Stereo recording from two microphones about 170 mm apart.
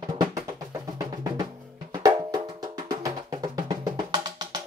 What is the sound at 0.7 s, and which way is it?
Music, 20° right (ahead or behind).